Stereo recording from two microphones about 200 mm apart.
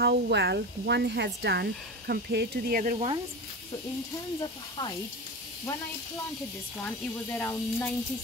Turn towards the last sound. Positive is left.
turn(degrees=15)  # may be behind; listen again after turning